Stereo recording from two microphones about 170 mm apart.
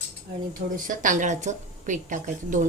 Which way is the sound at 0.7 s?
50° right (ahead or behind).